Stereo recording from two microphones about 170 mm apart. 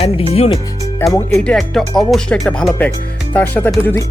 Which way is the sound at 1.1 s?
10° left (ahead or behind).